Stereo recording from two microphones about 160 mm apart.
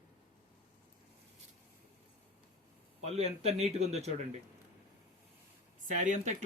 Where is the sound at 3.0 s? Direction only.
40° right (ahead or behind).